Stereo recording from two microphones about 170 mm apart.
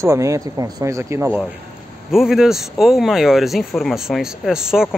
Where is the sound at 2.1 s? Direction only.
Centre (ahead or behind).